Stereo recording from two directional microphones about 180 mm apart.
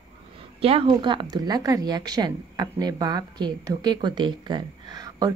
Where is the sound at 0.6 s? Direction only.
30° right (ahead or behind).